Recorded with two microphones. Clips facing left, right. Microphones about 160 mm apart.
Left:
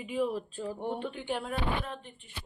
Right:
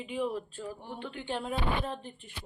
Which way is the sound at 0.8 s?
65° left (ahead or behind).